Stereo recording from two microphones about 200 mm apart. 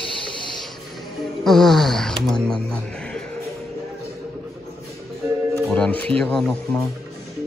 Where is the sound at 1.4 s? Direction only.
Centre (ahead or behind).